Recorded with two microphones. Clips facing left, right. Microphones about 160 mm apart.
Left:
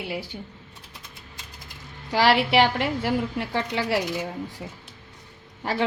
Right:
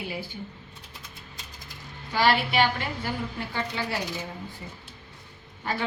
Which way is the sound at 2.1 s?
85° left.